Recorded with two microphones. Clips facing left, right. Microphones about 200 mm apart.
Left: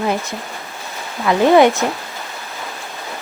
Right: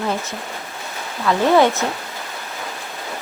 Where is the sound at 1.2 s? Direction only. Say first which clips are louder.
Left 4 dB; 15° left (ahead or behind).